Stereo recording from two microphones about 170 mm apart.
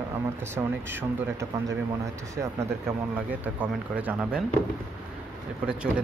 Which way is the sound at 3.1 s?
10° right (ahead or behind).